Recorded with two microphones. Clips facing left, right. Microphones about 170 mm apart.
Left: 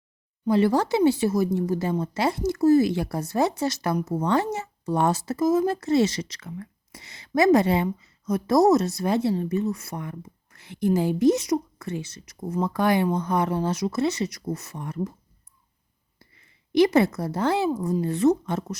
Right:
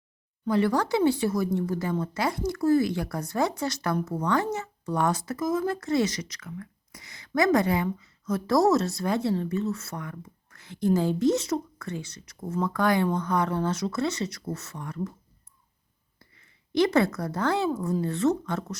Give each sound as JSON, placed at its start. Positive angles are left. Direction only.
{"t": 0.4, "sound": "a woman's voice", "side_deg": 20}
{"t": 16.3, "sound": "a woman's voice", "side_deg": 20}